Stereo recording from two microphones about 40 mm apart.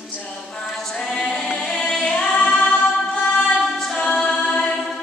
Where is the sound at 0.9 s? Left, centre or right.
Centre.